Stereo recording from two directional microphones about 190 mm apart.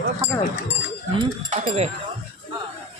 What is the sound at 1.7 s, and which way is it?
Speech, 35° right (ahead or behind).